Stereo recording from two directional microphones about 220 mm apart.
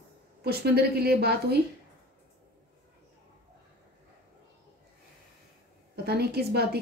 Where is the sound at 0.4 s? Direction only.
45° right (ahead or behind).